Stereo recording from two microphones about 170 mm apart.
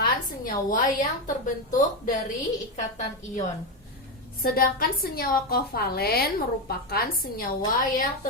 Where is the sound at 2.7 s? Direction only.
45° left (ahead or behind).